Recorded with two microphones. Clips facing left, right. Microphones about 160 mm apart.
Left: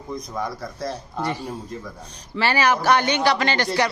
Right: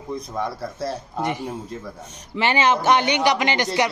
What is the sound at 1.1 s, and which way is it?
A man's voice, 15° right (ahead or behind).